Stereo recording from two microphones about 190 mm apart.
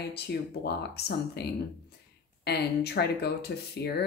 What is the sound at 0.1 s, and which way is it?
Speech, 60° left (ahead or behind).